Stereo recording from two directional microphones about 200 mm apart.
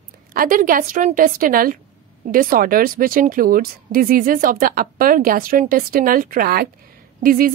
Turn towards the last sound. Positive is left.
turn(degrees=-45)  # may be behind; listen again after turning